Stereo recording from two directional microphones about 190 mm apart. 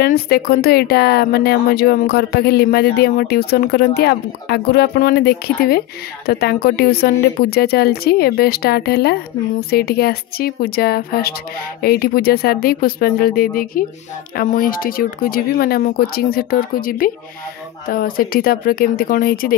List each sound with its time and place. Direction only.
0.0 s speech: 55° left (ahead or behind)